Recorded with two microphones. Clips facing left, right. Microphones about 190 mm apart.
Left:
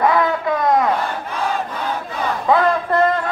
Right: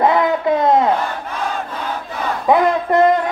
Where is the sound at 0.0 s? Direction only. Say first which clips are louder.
Right 2 dB; 20° right (ahead or behind).